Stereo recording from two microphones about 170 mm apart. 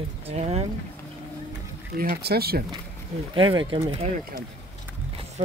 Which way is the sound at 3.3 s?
30° right (ahead or behind).